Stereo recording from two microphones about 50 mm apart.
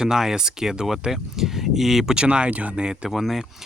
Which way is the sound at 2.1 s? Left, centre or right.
Right.